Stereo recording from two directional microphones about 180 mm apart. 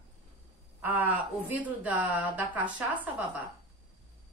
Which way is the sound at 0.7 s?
10° right (ahead or behind).